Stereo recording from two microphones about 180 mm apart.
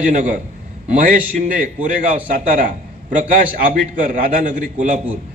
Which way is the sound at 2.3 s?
45° right (ahead or behind).